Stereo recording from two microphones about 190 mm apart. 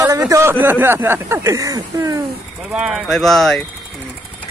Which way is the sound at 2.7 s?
Centre (ahead or behind).